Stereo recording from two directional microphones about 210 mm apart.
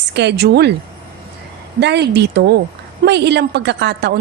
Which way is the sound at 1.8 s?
55° right (ahead or behind).